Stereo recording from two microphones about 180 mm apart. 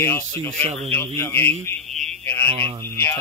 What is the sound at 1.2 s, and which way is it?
A man's voice, 10° left (ahead or behind).